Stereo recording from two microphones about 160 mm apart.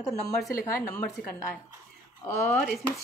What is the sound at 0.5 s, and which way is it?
Speech, 20° left (ahead or behind).